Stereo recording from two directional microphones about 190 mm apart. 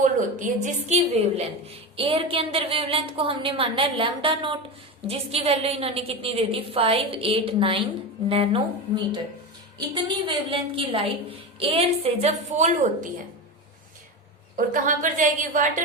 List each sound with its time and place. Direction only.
0.0 s a woman's voice: 40° right (ahead or behind)
9.9 s a woman's voice: 25° right (ahead or behind)
14.5 s a woman's voice: 45° right (ahead or behind)